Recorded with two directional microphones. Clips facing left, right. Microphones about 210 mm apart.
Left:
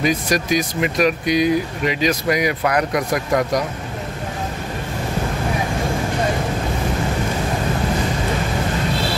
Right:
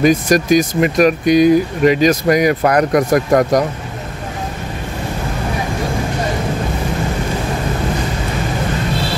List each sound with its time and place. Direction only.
0.0 s speech: 45° right (ahead or behind)